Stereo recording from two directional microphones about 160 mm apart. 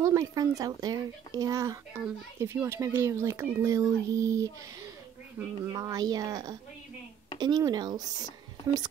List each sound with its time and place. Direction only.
0.0 s speech: 20° right (ahead or behind)